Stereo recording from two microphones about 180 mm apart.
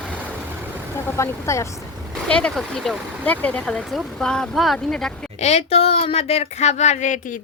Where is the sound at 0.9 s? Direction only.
15° left (ahead or behind).